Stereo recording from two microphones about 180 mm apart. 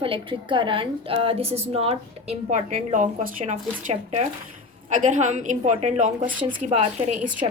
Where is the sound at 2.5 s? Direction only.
45° right (ahead or behind).